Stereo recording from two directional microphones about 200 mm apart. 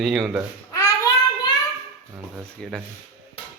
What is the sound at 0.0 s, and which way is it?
Speech, centre (ahead or behind).